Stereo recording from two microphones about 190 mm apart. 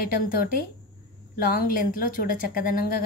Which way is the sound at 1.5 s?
50° left (ahead or behind).